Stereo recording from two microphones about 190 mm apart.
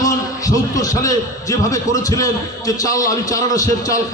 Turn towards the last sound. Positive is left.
turn(degrees=20)  # may be behind; listen again after turning